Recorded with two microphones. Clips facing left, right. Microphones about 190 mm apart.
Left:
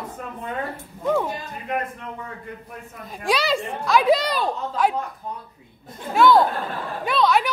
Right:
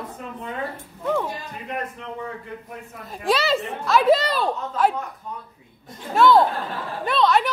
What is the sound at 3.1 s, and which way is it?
A woman's voice, centre (ahead or behind).